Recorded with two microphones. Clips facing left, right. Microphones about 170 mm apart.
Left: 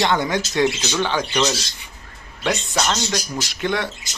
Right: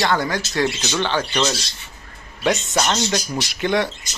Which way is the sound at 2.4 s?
5° right (ahead or behind).